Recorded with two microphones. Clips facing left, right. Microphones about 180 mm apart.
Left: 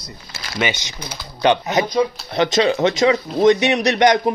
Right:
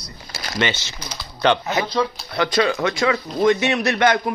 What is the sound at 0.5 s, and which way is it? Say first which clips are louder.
A man's voice: left 1 dB; 15° left (ahead or behind).